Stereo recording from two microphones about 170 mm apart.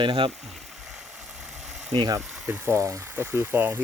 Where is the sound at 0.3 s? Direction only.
Centre (ahead or behind).